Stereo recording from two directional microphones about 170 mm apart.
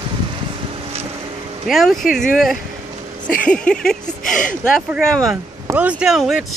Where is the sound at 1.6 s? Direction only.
Centre (ahead or behind).